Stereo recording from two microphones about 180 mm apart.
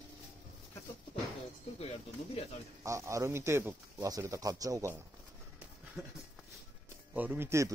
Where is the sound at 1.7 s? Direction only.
35° left (ahead or behind).